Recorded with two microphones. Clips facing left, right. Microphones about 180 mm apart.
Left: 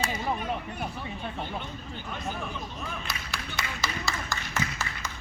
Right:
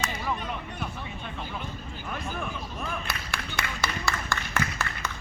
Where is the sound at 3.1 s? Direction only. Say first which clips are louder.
Right 2 dB; 55° right (ahead or behind).